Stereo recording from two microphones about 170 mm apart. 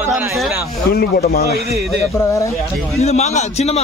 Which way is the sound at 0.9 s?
65° left (ahead or behind).